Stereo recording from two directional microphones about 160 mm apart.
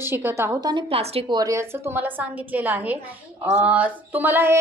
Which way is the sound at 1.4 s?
15° right (ahead or behind).